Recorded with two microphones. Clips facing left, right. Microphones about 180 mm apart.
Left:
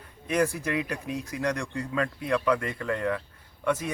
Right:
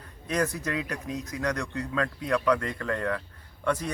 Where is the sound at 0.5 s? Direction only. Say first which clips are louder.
Left 2 dB; 15° left (ahead or behind).